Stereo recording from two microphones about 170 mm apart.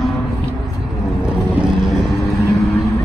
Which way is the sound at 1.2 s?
5° right (ahead or behind).